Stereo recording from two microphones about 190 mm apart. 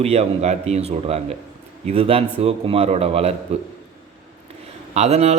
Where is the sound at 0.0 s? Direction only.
35° right (ahead or behind).